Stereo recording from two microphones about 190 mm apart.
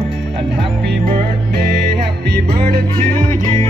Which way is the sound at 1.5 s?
60° right (ahead or behind).